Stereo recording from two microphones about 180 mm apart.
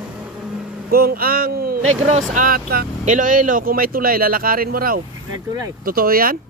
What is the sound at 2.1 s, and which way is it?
Speech, 45° right (ahead or behind).